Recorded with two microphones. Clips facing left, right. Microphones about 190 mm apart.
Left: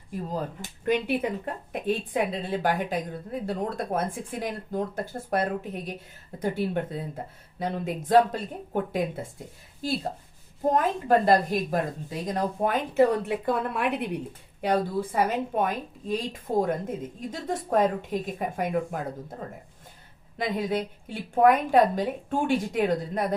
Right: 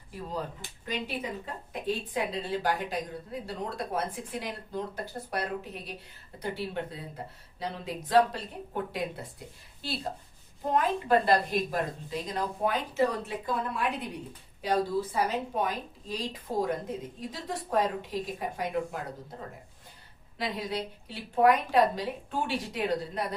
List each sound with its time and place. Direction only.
0.1 s a woman's voice: 45° left (ahead or behind)
0.9 s a woman's voice: 60° left (ahead or behind)
10.6 s a woman's voice: 45° left (ahead or behind)
20.4 s a woman's voice: 50° left (ahead or behind)